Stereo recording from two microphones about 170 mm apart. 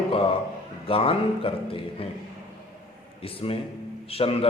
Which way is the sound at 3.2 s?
35° left (ahead or behind).